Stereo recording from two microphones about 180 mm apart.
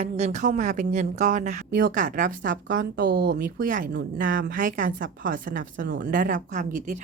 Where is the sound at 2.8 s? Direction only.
60° right (ahead or behind); by 7.0 s 45° right (ahead or behind).